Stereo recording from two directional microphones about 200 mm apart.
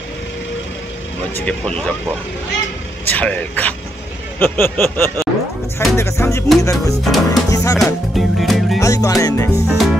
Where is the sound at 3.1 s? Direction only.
5° left (ahead or behind).